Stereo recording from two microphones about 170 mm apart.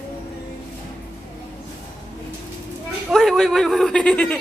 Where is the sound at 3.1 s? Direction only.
Centre (ahead or behind).